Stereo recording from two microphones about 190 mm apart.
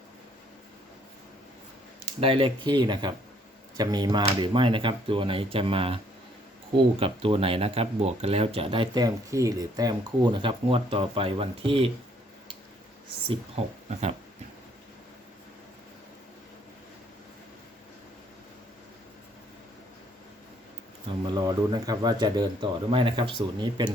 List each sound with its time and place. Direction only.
2.2 s speech: 25° right (ahead or behind)
13.2 s speech: 30° right (ahead or behind)
21.1 s speech: 20° right (ahead or behind)